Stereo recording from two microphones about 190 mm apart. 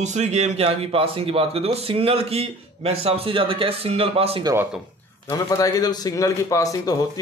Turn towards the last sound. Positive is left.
turn(degrees=20)  # may be behind; listen again after turning